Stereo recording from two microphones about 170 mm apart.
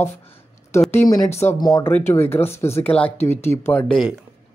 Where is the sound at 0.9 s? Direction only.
20° left (ahead or behind).